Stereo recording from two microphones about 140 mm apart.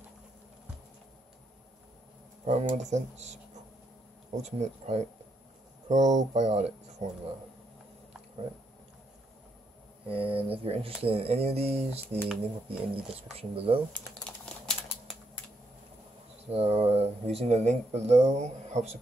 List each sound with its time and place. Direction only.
2.4 s speech: 55° right (ahead or behind)
4.4 s speech: 55° right (ahead or behind)
10.0 s speech: 40° right (ahead or behind)
13.9 s typing: 5° left (ahead or behind)
16.4 s speech: 45° right (ahead or behind)